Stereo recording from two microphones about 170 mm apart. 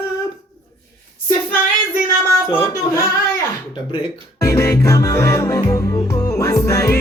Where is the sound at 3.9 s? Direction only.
20° left (ahead or behind).